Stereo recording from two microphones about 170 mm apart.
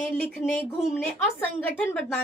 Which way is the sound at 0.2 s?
10° left (ahead or behind).